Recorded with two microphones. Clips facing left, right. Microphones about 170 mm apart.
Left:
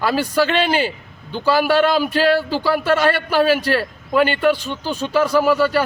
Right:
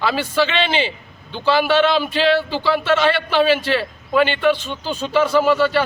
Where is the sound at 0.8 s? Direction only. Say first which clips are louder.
Left 1 dB; 45° left (ahead or behind).